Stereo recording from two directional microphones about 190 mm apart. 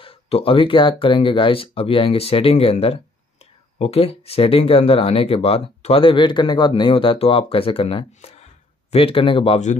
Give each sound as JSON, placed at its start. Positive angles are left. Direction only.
{"t": 0.0, "sound": "speech", "side_deg": 30}